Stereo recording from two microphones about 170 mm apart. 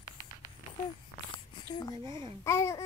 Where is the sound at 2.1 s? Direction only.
25° right (ahead or behind).